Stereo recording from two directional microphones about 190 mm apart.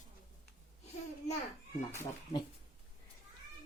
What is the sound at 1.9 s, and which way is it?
Speech, 15° left (ahead or behind).